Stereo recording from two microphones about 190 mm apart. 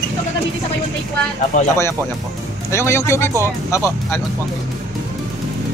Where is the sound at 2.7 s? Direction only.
15° left (ahead or behind).